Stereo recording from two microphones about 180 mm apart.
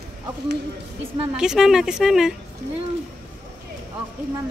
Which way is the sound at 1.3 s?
5° right (ahead or behind).